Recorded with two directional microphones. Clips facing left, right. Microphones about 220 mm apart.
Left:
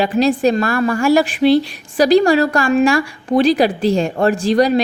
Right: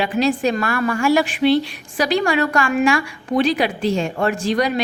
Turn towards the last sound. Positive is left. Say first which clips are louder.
# left 6 dB
turn(degrees=35)  # may be behind; listen again after turning